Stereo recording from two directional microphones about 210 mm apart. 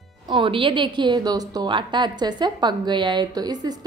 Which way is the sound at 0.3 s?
25° right (ahead or behind).